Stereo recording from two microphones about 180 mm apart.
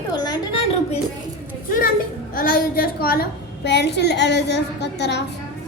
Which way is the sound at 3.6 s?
70° left (ahead or behind).